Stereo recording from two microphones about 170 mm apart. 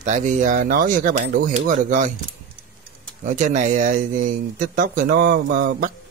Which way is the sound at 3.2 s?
50° right (ahead or behind).